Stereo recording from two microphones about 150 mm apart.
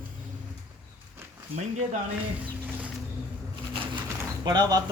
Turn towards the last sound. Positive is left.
turn(degrees=-30)  # may be behind; listen again after turning